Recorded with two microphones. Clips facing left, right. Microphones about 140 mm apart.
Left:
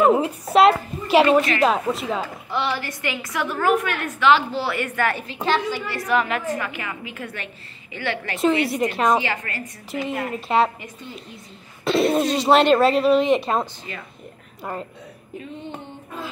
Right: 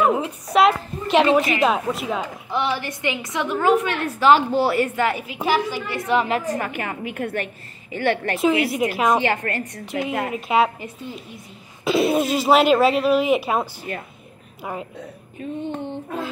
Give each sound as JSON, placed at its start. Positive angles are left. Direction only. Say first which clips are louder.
{"t": 0.0, "sound": "a woman's voice", "louder": "left 3 dB", "side_deg": 0}
{"t": 2.2, "sound": "a woman's voice", "louder": "right 1 dB", "side_deg": -15}
{"t": 4.8, "sound": "a woman's voice", "louder": "right 1 dB", "side_deg": -20}
{"t": 6.5, "sound": "a woman's voice", "louder": "right 2 dB", "side_deg": -40}
{"t": 8.4, "sound": "speech", "louder": "left 4 dB", "side_deg": 0}
{"t": 9.2, "sound": "a woman's voice", "louder": "right 5 dB", "side_deg": -55}
{"t": 9.9, "sound": "a woman's voice", "louder": "right 2 dB", "side_deg": -65}
{"t": 10.3, "sound": "speech", "louder": "even", "side_deg": 0}
{"t": 11.8, "sound": "speech", "louder": "even", "side_deg": 0}
{"t": 13.9, "sound": "a woman's voice", "louder": "right 5 dB", "side_deg": -45}
{"t": 14.6, "sound": "a woman's voice", "louder": "even", "side_deg": -5}